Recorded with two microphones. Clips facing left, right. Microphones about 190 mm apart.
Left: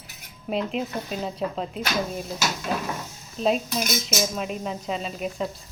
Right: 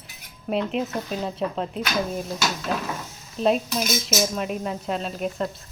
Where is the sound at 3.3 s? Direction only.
Centre (ahead or behind).